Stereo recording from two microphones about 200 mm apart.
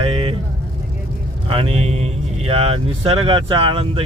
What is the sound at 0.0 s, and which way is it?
Vehicle, 30° right (ahead or behind).